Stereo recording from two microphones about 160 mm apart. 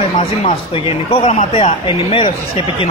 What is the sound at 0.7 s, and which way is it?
Speech, 35° left (ahead or behind).